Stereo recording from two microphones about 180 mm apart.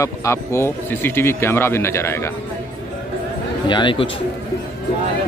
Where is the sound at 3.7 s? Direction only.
25° left (ahead or behind).